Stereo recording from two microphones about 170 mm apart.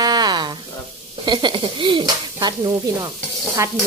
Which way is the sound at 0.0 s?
25° right (ahead or behind).